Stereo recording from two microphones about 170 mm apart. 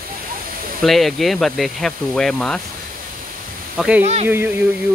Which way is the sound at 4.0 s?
40° right (ahead or behind).